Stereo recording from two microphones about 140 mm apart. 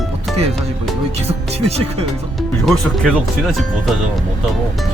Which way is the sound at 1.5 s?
45° right (ahead or behind).